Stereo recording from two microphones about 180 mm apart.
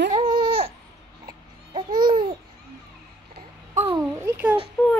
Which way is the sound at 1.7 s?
25° right (ahead or behind).